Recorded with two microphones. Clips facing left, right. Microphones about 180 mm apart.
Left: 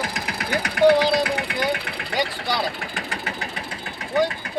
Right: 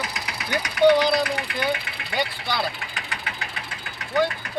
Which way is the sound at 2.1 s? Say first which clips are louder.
Left 2 dB; 40° left (ahead or behind).